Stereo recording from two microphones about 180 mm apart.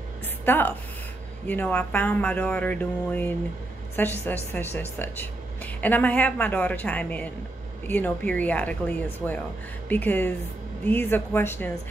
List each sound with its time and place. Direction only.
0.5 s a woman's voice: 10° left (ahead or behind)